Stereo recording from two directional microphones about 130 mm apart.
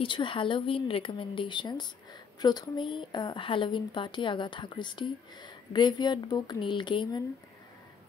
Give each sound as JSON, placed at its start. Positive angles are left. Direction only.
{"t": 0.0, "sound": "a woman's voice", "side_deg": 40}